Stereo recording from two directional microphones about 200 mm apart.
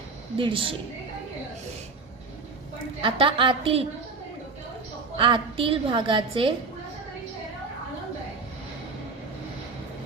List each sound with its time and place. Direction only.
0.3 s a woman's voice: 25° right (ahead or behind)
3.0 s a woman's voice: 25° right (ahead or behind)
5.1 s a woman's voice: 25° right (ahead or behind)